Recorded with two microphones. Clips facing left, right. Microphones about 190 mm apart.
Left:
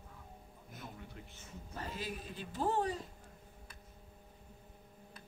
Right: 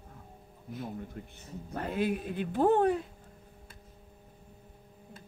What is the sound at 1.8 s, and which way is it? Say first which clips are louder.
Speech: right 12 dB; 60° right (ahead or behind).